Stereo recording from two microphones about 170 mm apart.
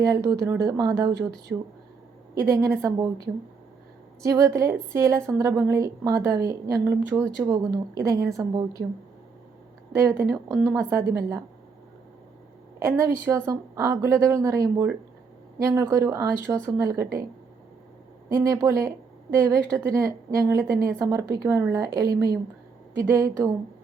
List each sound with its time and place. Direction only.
0.0 s a woman's voice: 20° right (ahead or behind)
2.3 s a woman's voice: 20° right (ahead or behind)
4.2 s a woman's voice: 20° right (ahead or behind)
9.9 s a woman's voice: 15° right (ahead or behind)
12.8 s a woman's voice: 15° right (ahead or behind)
18.3 s a woman's voice: 20° right (ahead or behind)